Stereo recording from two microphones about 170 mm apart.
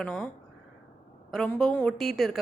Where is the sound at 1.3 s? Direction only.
Centre (ahead or behind).